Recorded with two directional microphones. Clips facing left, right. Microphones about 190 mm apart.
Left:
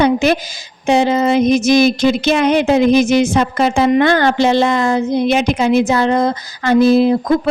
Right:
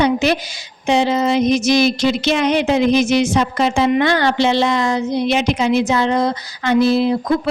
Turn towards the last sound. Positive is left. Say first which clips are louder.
# left 4 dB
turn(degrees=45)  # may be behind; listen again after turning